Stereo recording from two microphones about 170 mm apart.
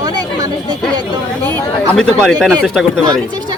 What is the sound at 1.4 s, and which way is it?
Speech, 10° left (ahead or behind).